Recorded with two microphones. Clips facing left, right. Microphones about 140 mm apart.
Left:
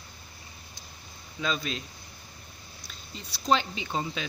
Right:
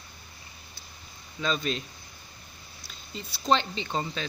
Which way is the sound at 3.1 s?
Centre (ahead or behind).